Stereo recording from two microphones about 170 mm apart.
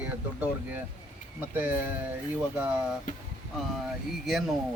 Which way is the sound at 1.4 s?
10° right (ahead or behind).